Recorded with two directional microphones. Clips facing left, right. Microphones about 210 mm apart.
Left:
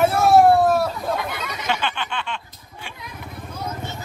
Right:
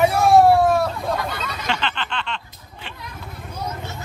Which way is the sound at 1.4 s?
15° left (ahead or behind).